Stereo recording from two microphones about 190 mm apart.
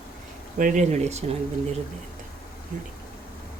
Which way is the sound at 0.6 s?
40° right (ahead or behind).